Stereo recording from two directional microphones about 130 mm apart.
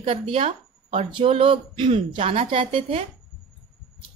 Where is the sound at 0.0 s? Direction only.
45° right (ahead or behind).